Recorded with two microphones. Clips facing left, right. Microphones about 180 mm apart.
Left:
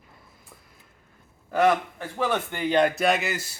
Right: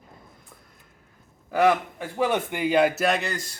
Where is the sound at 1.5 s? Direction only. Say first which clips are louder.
Right 1 dB; 10° right (ahead or behind); by 3.6 s 5° left (ahead or behind).